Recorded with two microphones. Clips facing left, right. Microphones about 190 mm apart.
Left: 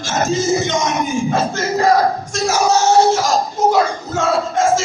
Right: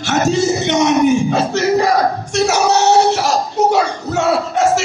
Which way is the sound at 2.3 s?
70° right (ahead or behind).